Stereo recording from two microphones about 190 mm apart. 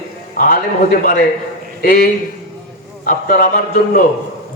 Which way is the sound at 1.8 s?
50° left (ahead or behind).